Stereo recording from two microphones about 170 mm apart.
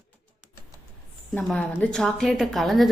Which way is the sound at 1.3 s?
10° left (ahead or behind).